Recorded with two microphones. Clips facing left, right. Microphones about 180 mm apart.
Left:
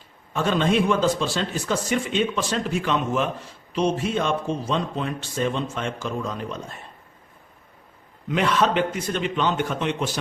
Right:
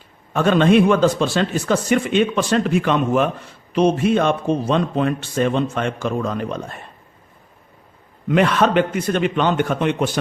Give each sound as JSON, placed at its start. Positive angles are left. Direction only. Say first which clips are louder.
{"t": 0.3, "sound": "speech", "louder": "right 7 dB", "side_deg": -65}
{"t": 8.3, "sound": "speech", "louder": "right 5 dB", "side_deg": -55}